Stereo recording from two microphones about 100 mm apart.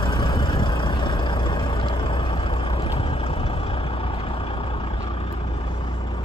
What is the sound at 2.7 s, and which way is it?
Vehicle, 70° left (ahead or behind).